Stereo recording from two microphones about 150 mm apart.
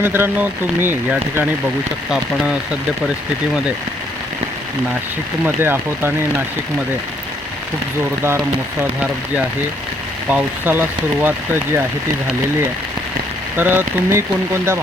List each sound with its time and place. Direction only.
0.0 s speech: 15° right (ahead or behind)
5.5 s speech: 15° right (ahead or behind)
8.8 s speech: 10° right (ahead or behind)
13.6 s speech: 15° right (ahead or behind)